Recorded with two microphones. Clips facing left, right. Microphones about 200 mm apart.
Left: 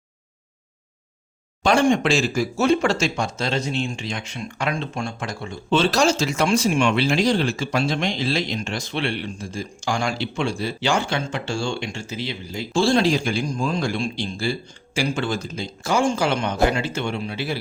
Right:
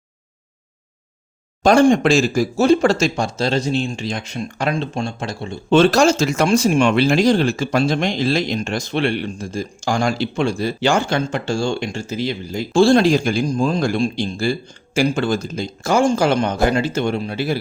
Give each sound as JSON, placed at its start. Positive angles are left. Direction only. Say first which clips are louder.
{"t": 1.6, "sound": "speech", "louder": "right 5 dB", "side_deg": -40}
{"t": 4.7, "sound": "speech", "louder": "right 4 dB", "side_deg": -25}
{"t": 5.7, "sound": "speech", "louder": "right 6 dB", "side_deg": -50}